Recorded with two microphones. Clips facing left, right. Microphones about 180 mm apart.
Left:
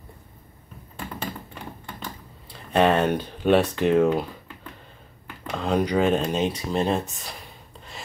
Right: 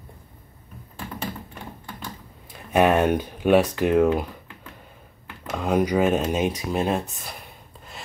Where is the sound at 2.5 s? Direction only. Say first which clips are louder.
Right 1 dB; 10° right (ahead or behind).